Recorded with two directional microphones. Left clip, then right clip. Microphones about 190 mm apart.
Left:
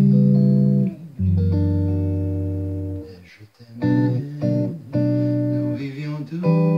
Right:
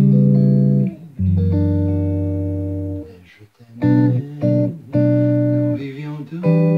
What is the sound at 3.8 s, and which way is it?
Music, 50° right (ahead or behind).